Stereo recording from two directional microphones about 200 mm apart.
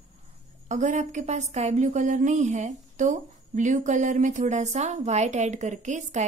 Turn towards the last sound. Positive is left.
turn(degrees=-35)  # may be behind; listen again after turning